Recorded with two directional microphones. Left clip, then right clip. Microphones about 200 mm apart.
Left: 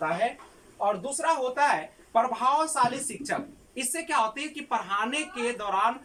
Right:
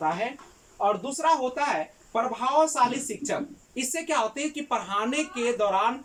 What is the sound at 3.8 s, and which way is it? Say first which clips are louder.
Speech: even; 20° right (ahead or behind).